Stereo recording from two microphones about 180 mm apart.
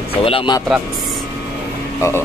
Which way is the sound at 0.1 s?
30° left (ahead or behind).